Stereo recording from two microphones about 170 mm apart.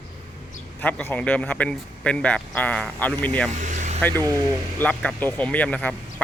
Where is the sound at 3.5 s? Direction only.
45° right (ahead or behind).